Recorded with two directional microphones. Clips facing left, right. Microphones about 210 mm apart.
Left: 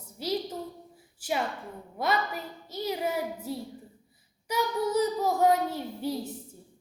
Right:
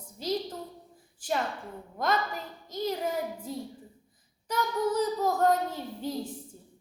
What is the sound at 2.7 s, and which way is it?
A woman's voice, 10° left (ahead or behind).